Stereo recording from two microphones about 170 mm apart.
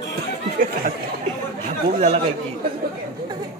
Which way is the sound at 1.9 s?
40° right (ahead or behind).